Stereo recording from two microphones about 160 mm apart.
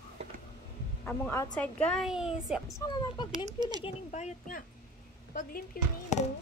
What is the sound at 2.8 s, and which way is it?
Speech, 20° left (ahead or behind).